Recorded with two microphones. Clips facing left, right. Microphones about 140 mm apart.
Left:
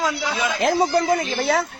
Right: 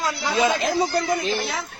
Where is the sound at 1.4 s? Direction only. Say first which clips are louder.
Left 8 dB; 85° left.